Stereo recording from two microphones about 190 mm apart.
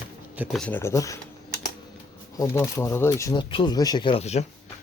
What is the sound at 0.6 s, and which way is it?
Speech, 10° left (ahead or behind).